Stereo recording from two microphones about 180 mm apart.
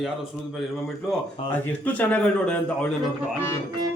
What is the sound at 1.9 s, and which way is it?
Speech, 10° left (ahead or behind).